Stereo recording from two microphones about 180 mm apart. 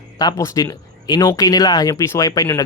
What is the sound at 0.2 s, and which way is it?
Speech, 20° left (ahead or behind).